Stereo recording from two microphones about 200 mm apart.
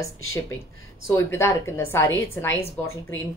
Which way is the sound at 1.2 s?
15° left (ahead or behind).